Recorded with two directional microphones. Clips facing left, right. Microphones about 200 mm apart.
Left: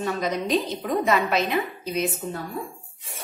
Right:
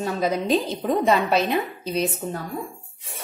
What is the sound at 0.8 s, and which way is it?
A woman's voice, 30° right (ahead or behind).